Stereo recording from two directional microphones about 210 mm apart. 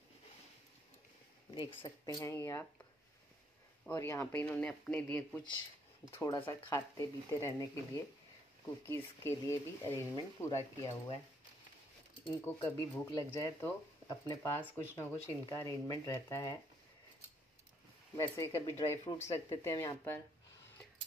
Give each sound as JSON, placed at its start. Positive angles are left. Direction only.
{"t": 1.5, "sound": "speech", "side_deg": 25}
{"t": 3.8, "sound": "speech", "side_deg": 15}
{"t": 6.1, "sound": "speech", "side_deg": 15}
{"t": 12.4, "sound": "speech", "side_deg": 10}
{"t": 18.1, "sound": "speech", "side_deg": 15}